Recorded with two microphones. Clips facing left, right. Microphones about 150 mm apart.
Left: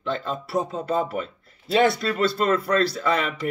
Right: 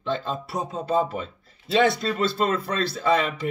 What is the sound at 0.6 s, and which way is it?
Speech, 25° right (ahead or behind).